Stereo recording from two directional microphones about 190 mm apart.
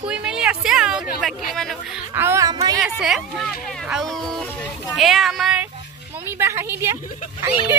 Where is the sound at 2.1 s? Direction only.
15° right (ahead or behind).